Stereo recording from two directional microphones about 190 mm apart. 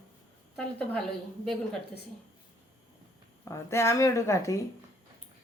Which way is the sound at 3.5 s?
15° left (ahead or behind).